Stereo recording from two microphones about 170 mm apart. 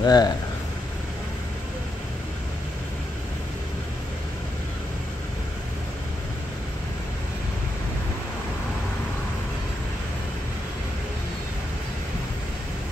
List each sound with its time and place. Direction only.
0.0 s speech: 20° left (ahead or behind)